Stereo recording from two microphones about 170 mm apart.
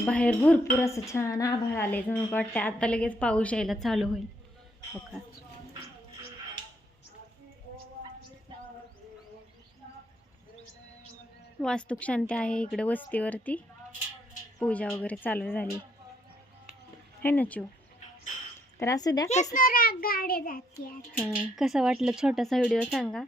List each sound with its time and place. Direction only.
0.0 s speech: 10° left (ahead or behind)
8.5 s a sound: 30° right (ahead or behind)
11.6 s speech: 5° left (ahead or behind)
14.6 s speech: 10° left (ahead or behind)
17.2 s speech: 10° left (ahead or behind)
18.8 s speech: 20° left (ahead or behind)
19.5 s child singing: 55° left (ahead or behind)
21.3 s speech: 5° right (ahead or behind)